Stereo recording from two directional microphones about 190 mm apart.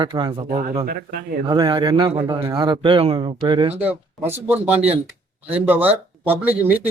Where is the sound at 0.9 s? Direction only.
50° right (ahead or behind).